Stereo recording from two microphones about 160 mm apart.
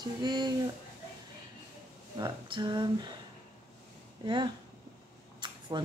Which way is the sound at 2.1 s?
30° right (ahead or behind).